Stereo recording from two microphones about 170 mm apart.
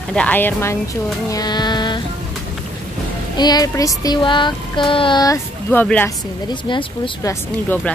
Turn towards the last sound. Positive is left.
turn(degrees=15)  # may be behind; listen again after turning